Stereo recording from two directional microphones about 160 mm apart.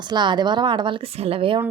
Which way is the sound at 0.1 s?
30° right (ahead or behind).